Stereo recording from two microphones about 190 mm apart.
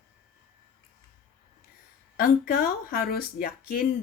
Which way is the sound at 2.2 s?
50° left (ahead or behind).